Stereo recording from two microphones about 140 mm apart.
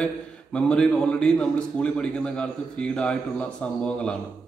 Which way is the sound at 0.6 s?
5° left (ahead or behind).